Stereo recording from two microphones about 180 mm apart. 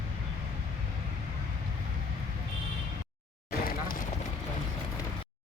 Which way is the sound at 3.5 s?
55° left (ahead or behind).